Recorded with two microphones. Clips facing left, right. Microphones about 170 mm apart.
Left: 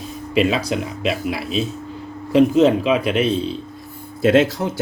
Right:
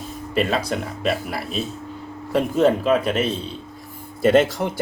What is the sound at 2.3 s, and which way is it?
Speech, 90° left.